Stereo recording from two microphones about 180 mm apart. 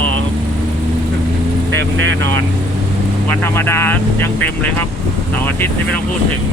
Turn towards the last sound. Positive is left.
turn(degrees=10)  # may be behind; listen again after turning